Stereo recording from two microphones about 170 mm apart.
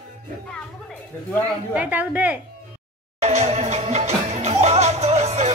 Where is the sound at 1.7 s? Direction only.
10° right (ahead or behind).